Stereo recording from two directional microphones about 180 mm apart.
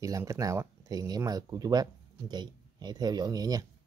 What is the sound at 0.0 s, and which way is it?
Speech, 15° right (ahead or behind).